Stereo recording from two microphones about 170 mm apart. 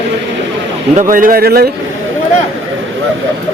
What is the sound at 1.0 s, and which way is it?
Speech, 55° right (ahead or behind).